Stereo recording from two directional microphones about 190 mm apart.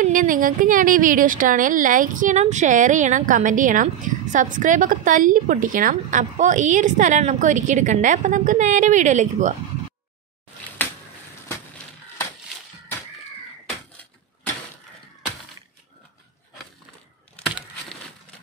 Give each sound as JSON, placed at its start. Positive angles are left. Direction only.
{"t": 0.0, "sound": "speech", "side_deg": -45}